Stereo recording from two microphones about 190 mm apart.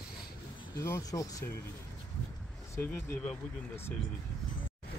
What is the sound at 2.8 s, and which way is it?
Speech, 10° left (ahead or behind).